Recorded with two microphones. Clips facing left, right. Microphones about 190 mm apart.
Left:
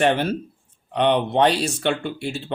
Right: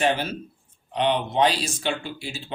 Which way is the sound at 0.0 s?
60° left (ahead or behind).